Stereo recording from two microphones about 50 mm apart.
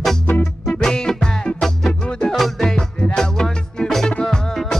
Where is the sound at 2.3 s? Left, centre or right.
Centre.